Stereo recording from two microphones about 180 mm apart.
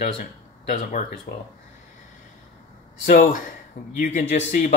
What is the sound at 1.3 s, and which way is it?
Speech, 45° left (ahead or behind).